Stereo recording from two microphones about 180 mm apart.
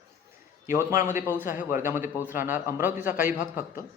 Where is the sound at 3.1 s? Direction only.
50° left (ahead or behind).